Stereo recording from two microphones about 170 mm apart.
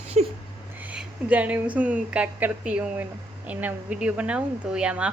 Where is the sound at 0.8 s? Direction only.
5° right (ahead or behind).